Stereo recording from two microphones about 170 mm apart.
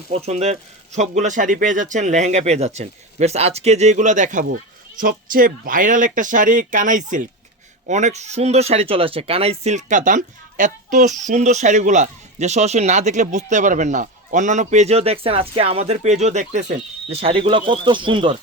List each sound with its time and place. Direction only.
0.3 s speech: 40° right (ahead or behind)